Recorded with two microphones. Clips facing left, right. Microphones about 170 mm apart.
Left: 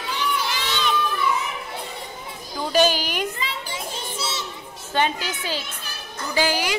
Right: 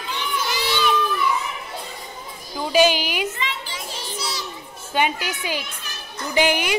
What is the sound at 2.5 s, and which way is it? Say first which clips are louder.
Children playing: right 2 dB; 5° right (ahead or behind).